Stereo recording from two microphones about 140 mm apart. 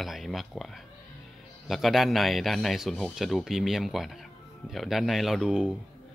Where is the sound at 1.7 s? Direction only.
Centre (ahead or behind).